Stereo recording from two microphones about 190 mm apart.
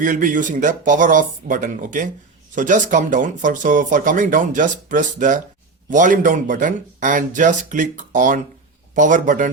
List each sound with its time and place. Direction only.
0.0 s speech: 45° right (ahead or behind)